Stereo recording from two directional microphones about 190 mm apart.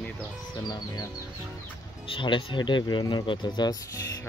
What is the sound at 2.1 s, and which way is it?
Speech, 25° left (ahead or behind).